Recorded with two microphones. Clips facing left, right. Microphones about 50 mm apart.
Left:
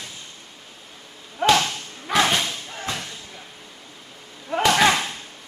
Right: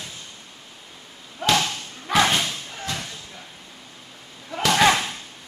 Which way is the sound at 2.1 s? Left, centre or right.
Centre.